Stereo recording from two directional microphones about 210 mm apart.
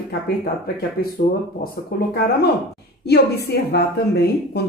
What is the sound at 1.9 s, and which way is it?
A woman's voice, 45° left (ahead or behind).